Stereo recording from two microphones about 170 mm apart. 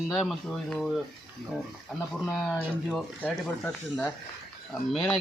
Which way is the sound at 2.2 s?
Centre (ahead or behind).